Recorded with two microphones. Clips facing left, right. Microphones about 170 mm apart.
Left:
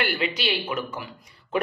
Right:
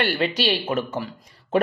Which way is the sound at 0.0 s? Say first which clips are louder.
Right 4 dB; 35° right (ahead or behind).